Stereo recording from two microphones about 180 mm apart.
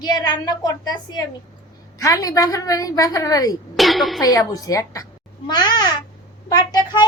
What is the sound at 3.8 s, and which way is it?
Speech, centre (ahead or behind).